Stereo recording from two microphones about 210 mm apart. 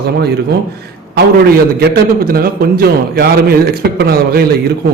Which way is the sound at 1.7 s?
50° right (ahead or behind).